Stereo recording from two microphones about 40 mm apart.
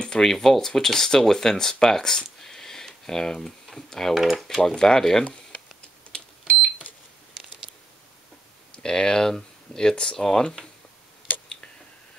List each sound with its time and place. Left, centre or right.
0.0 s a sound: left
0.3 s speech: centre
4.1 s speech: centre
4.6 s speech: centre
6.1 s fire alarm: left
8.8 s speech: centre